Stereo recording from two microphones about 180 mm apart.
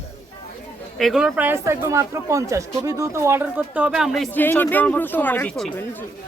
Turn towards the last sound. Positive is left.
turn(degrees=5)  # may be behind; listen again after turning